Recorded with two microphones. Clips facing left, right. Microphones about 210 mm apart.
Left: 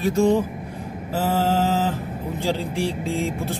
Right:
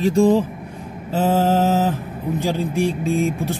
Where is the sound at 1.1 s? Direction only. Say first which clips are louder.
Right 4 dB; 20° right (ahead or behind).